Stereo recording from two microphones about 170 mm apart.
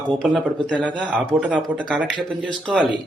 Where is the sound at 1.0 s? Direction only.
10° right (ahead or behind).